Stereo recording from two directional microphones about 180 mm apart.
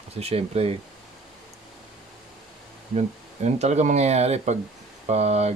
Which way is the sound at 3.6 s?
40° right (ahead or behind).